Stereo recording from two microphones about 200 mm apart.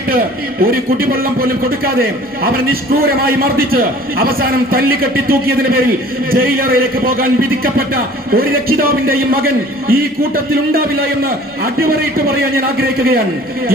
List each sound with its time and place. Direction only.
0.6 s a man's voice: 50° right (ahead or behind)